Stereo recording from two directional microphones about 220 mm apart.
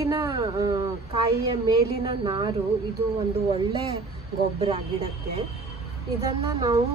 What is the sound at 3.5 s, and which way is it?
A woman's voice, 20° right (ahead or behind).